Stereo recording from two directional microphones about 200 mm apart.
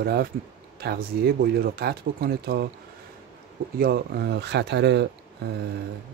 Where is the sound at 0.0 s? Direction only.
50° right (ahead or behind).